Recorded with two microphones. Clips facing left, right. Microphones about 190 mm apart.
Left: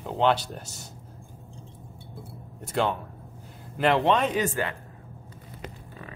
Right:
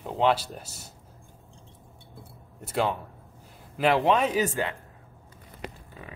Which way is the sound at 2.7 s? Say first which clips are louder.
Left 1 dB; 5° right (ahead or behind).